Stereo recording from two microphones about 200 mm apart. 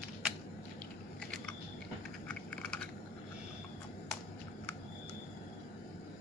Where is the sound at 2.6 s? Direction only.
5° left (ahead or behind).